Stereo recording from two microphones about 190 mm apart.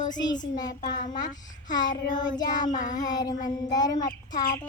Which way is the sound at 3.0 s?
20° left (ahead or behind).